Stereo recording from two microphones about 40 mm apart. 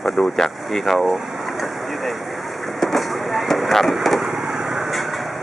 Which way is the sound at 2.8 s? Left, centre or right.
Centre.